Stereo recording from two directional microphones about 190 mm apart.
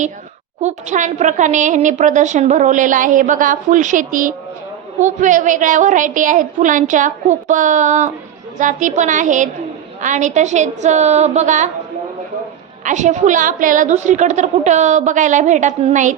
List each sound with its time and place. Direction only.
0.6 s a woman's voice: 40° right (ahead or behind)
12.8 s a woman's voice: 40° right (ahead or behind)